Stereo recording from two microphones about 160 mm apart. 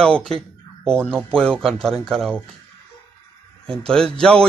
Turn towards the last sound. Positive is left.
turn(degrees=5)  # may be behind; listen again after turning